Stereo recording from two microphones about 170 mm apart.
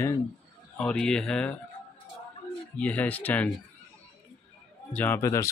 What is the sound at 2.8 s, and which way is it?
Speech, 10° left (ahead or behind).